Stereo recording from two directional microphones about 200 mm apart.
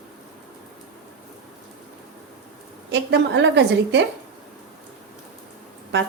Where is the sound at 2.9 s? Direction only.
60° right (ahead or behind).